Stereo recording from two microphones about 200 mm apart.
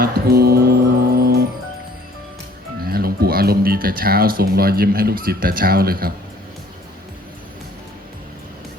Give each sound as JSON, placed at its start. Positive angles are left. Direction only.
{"t": 0.0, "sound": "music", "side_deg": -50}
{"t": 2.8, "sound": "speech", "side_deg": -50}